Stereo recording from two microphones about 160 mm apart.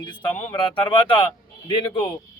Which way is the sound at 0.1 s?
30° left (ahead or behind).